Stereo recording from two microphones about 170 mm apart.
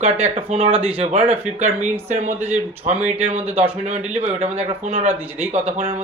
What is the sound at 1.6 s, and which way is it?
Speech, 40° right (ahead or behind).